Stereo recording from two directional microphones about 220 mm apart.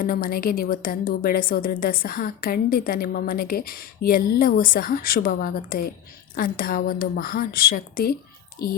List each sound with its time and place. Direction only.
0.0 s a woman's voice: 40° left (ahead or behind)